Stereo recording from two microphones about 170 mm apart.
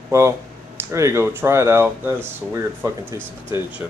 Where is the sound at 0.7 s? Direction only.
15° right (ahead or behind).